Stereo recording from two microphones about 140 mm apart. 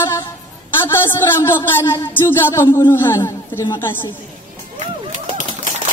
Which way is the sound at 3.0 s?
20° left (ahead or behind).